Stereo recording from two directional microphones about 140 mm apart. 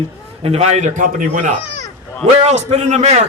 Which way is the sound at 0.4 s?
50° right (ahead or behind).